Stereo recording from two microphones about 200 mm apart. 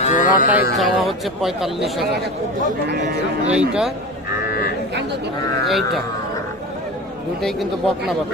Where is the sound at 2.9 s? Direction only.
60° right (ahead or behind).